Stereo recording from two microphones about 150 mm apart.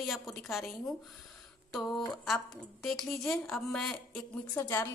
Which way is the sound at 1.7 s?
Centre (ahead or behind).